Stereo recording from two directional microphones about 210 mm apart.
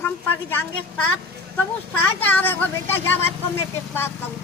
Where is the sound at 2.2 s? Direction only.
10° left (ahead or behind).